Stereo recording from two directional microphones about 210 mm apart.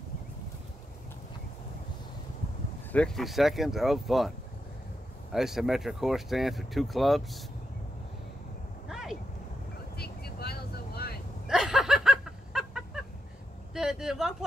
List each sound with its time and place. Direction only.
2.9 s speech: 5° left (ahead or behind)
5.3 s speech: centre (ahead or behind)
8.8 s vehicle: centre (ahead or behind)
9.9 s vehicle: 50° left (ahead or behind)
11.4 s a sound: 5° right (ahead or behind)